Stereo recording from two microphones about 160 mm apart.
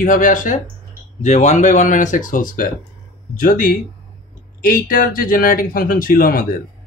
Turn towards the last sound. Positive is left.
turn(degrees=65)  # may be behind; listen again after turning